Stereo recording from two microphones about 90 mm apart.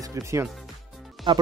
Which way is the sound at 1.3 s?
75° right (ahead or behind).